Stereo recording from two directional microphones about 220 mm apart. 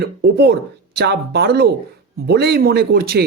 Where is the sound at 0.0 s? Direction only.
45° right (ahead or behind).